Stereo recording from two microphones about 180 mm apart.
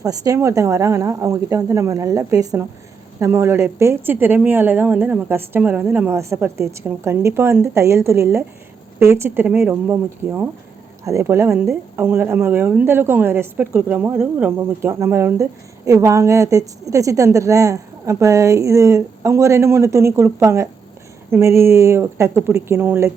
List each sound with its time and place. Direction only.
0.0 s a woman's voice: 20° right (ahead or behind)